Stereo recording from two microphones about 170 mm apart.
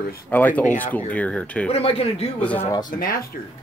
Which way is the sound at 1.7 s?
35° left (ahead or behind).